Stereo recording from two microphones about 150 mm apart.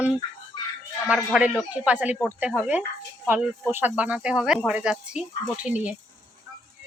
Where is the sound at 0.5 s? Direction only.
30° left (ahead or behind).